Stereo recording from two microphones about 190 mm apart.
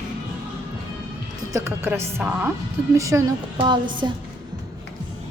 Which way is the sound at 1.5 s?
15° right (ahead or behind).